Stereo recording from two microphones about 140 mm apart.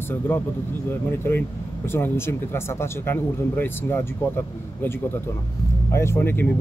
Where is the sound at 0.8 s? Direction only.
15° left (ahead or behind).